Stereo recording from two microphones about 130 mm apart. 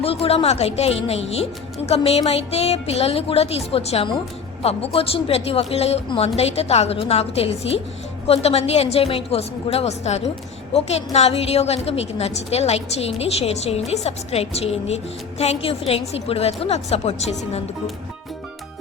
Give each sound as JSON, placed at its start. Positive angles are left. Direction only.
{"t": 0.0, "sound": "a woman's voice", "side_deg": 50}